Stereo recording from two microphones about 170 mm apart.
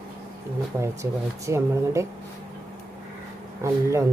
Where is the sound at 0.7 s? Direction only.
15° right (ahead or behind).